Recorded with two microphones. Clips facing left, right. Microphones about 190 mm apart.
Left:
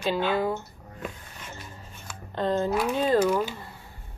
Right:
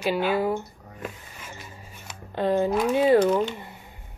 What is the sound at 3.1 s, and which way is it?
Speech, 5° left (ahead or behind).